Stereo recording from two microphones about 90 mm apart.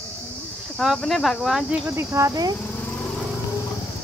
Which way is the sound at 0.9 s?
5° left (ahead or behind).